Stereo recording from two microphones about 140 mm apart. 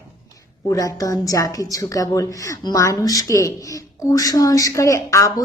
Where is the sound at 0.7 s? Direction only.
25° left (ahead or behind).